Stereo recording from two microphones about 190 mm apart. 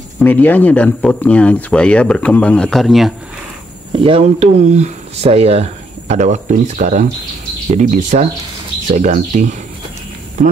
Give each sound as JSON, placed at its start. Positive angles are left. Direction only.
{"t": 0.2, "sound": "speech", "side_deg": 10}
{"t": 3.9, "sound": "speech", "side_deg": -30}